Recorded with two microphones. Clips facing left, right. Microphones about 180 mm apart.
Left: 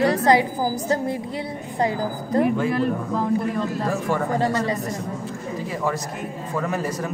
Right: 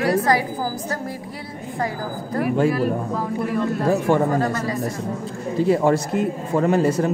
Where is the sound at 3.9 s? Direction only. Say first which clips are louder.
Right 8 dB; 25° right (ahead or behind).